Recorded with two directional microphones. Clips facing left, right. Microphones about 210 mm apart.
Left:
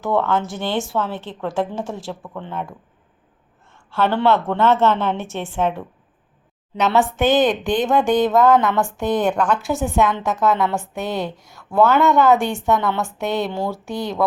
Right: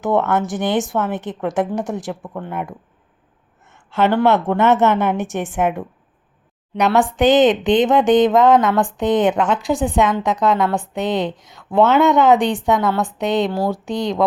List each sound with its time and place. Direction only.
0.0 s a woman's voice: 20° right (ahead or behind)
3.9 s a woman's voice: 20° right (ahead or behind)